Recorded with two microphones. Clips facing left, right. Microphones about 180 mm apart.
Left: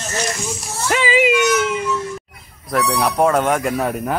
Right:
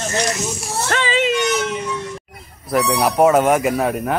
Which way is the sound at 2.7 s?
5° right (ahead or behind).